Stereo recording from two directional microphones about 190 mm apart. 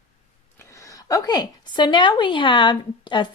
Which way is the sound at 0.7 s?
15° left (ahead or behind).